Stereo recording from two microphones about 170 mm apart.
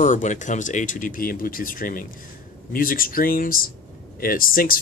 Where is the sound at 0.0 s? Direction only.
45° left (ahead or behind).